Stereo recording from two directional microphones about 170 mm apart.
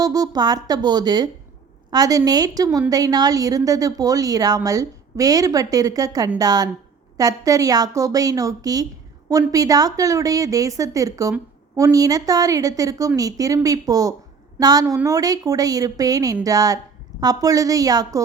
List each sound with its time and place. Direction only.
0.0 s a woman's voice: 20° right (ahead or behind)